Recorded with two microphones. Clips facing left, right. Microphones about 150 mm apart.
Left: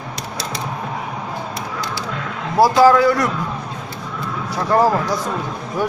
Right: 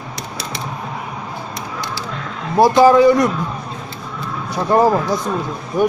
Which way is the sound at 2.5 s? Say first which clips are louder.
Right 2 dB; 20° right (ahead or behind).